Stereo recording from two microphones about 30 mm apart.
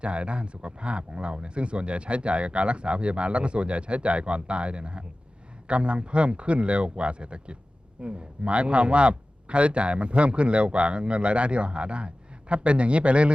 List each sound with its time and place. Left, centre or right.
0.0 s speech: right